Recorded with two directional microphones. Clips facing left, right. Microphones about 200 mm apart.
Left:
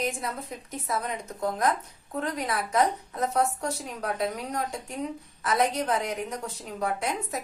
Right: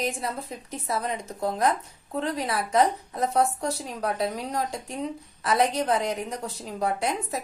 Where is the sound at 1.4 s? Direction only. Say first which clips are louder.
Right 1 dB; 30° right (ahead or behind).